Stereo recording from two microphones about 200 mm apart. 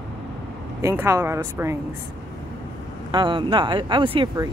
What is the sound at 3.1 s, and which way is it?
Speech, 20° right (ahead or behind).